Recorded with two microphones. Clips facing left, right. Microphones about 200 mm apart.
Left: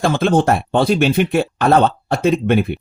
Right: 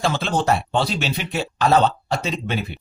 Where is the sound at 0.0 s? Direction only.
50° left (ahead or behind).